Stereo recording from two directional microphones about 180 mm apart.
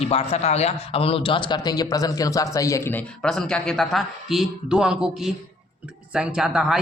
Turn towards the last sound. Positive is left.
turn(degrees=-5)  # may be behind; listen again after turning